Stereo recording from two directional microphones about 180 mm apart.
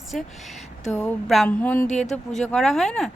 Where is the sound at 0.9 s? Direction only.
10° left (ahead or behind).